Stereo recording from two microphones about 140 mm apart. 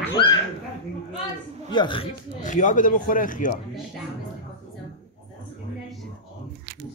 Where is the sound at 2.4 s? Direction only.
60° left (ahead or behind).